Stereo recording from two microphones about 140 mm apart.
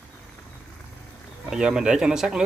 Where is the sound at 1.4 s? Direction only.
5° right (ahead or behind).